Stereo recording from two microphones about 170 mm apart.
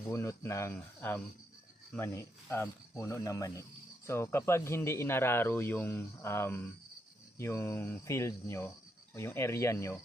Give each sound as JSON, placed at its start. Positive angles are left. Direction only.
{"t": 0.0, "sound": "speech", "side_deg": 15}